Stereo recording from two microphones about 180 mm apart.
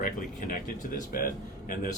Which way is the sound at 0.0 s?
50° left (ahead or behind).